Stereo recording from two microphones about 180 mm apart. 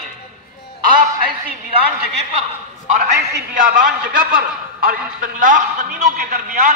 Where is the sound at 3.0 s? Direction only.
45° right (ahead or behind).